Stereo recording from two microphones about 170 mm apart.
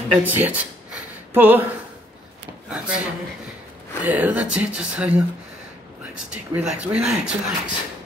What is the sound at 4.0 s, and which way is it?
Speech, 10° right (ahead or behind).